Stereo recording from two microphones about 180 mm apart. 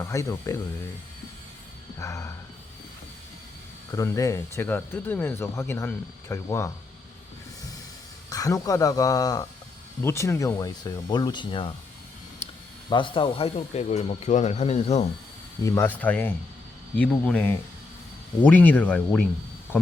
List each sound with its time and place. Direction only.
0.0 s speech: 15° left (ahead or behind)
2.0 s speech: 15° left (ahead or behind)
3.9 s speech: 20° left (ahead or behind)
8.3 s speech: 20° left (ahead or behind)
12.9 s speech: 25° left (ahead or behind)
15.6 s speech: 15° left (ahead or behind)